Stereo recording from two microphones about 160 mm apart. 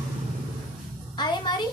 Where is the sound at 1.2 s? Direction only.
30° left (ahead or behind).